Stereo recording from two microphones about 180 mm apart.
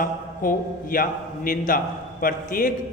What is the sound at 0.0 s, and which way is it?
Mantra, 50° left (ahead or behind).